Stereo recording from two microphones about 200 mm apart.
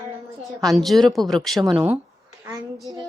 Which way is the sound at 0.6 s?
Centre (ahead or behind).